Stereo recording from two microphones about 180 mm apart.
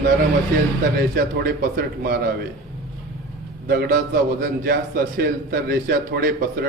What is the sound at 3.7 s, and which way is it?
A man's voice, 55° right (ahead or behind).